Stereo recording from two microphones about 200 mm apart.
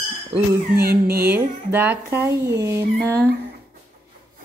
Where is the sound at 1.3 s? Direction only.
10° right (ahead or behind).